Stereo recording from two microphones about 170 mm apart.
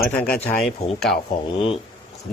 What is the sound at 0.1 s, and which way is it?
Speech, 5° left (ahead or behind).